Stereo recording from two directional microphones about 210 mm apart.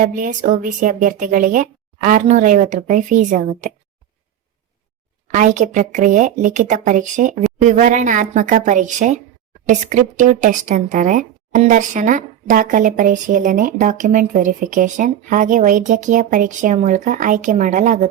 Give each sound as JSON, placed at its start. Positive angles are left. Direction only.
{"t": 0.0, "sound": "speech", "side_deg": -40}
{"t": 5.3, "sound": "speech", "side_deg": -35}